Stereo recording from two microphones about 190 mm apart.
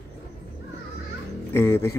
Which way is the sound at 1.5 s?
10° left (ahead or behind).